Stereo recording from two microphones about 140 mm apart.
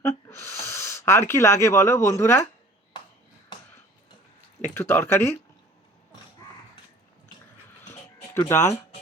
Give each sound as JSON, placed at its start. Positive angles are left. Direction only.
{"t": 0.0, "sound": "a sound", "side_deg": 20}
{"t": 1.3, "sound": "speech", "side_deg": 20}
{"t": 4.6, "sound": "speech", "side_deg": 15}
{"t": 8.3, "sound": "speech", "side_deg": 20}